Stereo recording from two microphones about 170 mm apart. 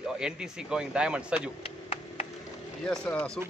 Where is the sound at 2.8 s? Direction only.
5° left (ahead or behind).